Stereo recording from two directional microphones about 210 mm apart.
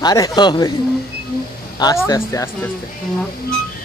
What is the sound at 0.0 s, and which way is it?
Speech, 20° left (ahead or behind).